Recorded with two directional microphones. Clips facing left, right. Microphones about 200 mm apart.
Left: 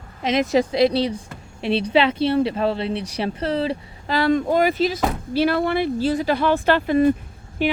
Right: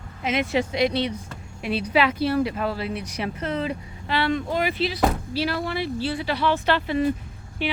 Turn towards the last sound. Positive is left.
turn(degrees=45)  # may be behind; listen again after turning